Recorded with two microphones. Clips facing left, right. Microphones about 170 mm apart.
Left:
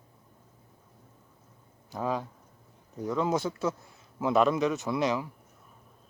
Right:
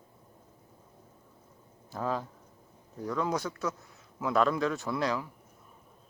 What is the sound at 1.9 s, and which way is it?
Speech, 15° left (ahead or behind).